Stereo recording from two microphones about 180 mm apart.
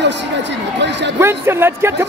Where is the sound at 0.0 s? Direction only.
75° right (ahead or behind).